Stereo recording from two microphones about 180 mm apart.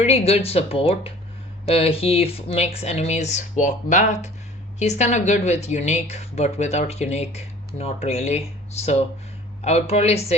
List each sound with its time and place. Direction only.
0.0 s speech: 35° left (ahead or behind)